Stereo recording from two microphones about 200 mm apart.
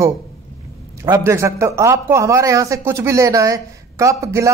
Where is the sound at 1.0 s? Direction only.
20° right (ahead or behind).